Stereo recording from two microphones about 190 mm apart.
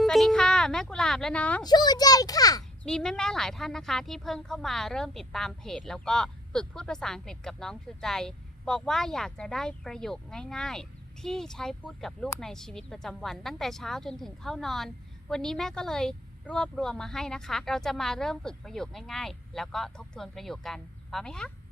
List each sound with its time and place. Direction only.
0.0 s a sound: centre (ahead or behind)
1.6 s a child's voice: 20° left (ahead or behind)
2.8 s a woman's voice: 5° left (ahead or behind)